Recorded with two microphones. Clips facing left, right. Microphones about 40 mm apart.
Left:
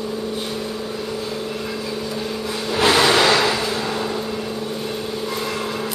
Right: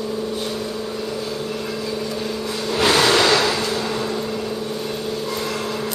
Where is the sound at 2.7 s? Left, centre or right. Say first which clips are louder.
Left 1 dB; centre.